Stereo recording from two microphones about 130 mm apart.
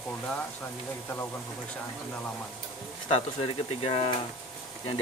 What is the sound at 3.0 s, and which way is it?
Speech, 45° left (ahead or behind).